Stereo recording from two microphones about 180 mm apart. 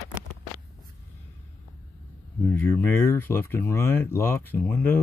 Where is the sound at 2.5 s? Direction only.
10° left (ahead or behind).